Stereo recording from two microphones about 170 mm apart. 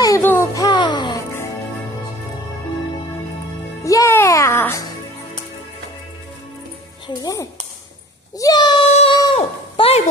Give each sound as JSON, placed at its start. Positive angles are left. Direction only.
{"t": 0.0, "sound": "music", "side_deg": 15}
{"t": 0.7, "sound": "music", "side_deg": 25}
{"t": 3.8, "sound": "music", "side_deg": 20}
{"t": 7.1, "sound": "music", "side_deg": 20}
{"t": 8.4, "sound": "a sound", "side_deg": 20}
{"t": 8.9, "sound": "a sound", "side_deg": 35}